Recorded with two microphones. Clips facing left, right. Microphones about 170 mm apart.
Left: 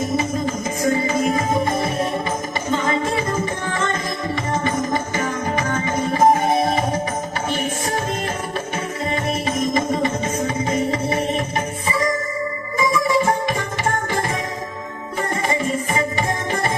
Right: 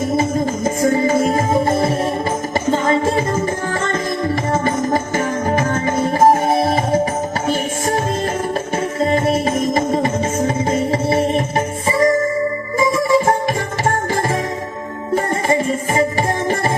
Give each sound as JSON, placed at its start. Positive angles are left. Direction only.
{"t": 0.2, "sound": "music", "side_deg": -50}
{"t": 4.6, "sound": "music", "side_deg": -40}
{"t": 9.0, "sound": "music", "side_deg": -35}
{"t": 15.1, "sound": "music", "side_deg": -40}